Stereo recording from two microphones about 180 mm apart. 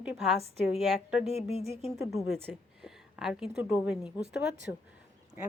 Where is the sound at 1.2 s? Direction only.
35° left (ahead or behind).